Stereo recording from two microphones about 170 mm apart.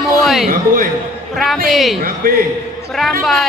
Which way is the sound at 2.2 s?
60° right (ahead or behind).